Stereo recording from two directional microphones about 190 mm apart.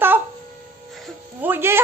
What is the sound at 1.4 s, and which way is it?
Speech, 10° right (ahead or behind).